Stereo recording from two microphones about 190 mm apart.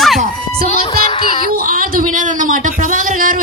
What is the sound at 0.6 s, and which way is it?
Music, 35° left (ahead or behind).